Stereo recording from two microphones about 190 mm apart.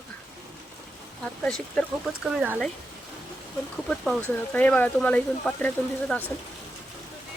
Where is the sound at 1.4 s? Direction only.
5° left (ahead or behind).